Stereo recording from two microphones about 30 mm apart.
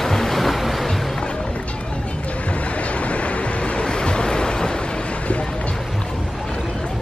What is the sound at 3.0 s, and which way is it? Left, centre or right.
Vehicle, left.